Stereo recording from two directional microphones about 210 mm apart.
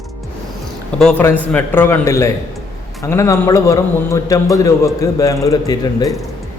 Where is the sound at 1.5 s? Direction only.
10° left (ahead or behind).